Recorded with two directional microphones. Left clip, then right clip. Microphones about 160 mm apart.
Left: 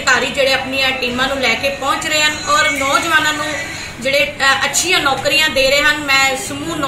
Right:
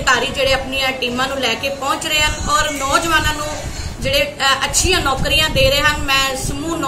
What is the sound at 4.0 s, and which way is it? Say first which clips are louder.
A woman's voice: left 2 dB; 15° right (ahead or behind).